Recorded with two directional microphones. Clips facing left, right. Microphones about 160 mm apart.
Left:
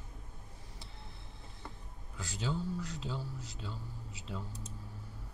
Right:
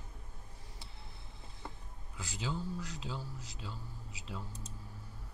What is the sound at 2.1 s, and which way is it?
Speech, 5° right (ahead or behind).